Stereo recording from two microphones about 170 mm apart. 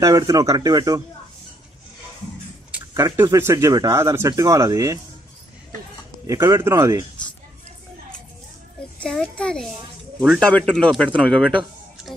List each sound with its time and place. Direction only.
0.0 s speech: 20° right (ahead or behind)
2.9 s speech: 20° right (ahead or behind)
6.2 s speech: 15° right (ahead or behind)
9.0 s a child's voice: 5° left (ahead or behind)
11.1 s speech: 5° right (ahead or behind)